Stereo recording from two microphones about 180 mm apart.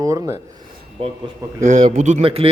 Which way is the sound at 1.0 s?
30° right (ahead or behind).